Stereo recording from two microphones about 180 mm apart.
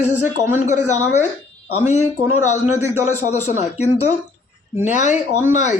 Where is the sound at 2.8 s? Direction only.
15° right (ahead or behind).